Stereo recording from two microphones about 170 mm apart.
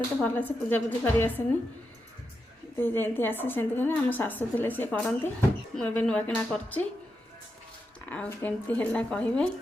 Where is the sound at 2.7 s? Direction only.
10° left (ahead or behind).